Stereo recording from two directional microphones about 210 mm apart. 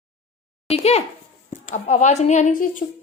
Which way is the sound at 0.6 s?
30° left (ahead or behind).